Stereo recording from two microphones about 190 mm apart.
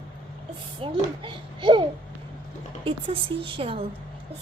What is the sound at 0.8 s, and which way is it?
Speech, 25° right (ahead or behind).